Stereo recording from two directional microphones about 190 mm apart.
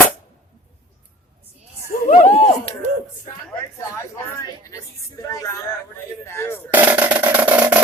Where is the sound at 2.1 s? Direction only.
35° left (ahead or behind).